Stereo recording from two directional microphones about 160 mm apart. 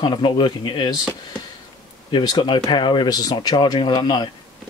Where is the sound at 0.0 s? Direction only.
25° left (ahead or behind).